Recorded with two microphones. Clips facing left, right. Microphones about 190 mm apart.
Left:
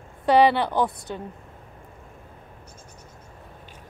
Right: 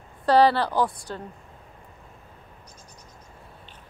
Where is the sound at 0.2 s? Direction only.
20° left (ahead or behind).